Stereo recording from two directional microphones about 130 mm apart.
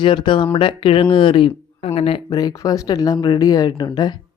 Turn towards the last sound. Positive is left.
turn(degrees=35)  # may be behind; listen again after turning